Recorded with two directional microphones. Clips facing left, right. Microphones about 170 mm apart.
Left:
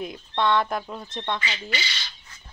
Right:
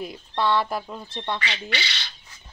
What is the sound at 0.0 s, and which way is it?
Speech, centre (ahead or behind).